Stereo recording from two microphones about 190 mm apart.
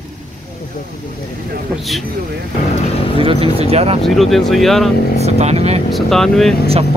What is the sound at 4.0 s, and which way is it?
Speech, centre (ahead or behind).